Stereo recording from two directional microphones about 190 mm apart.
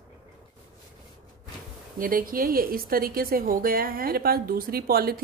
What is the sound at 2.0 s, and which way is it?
A woman's voice, 45° right (ahead or behind).